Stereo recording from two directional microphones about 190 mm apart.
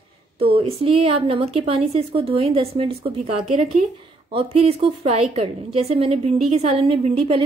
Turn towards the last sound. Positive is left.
turn(degrees=-30)  # may be behind; listen again after turning